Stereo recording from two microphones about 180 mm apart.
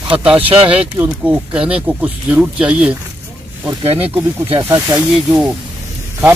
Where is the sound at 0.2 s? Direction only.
5° right (ahead or behind).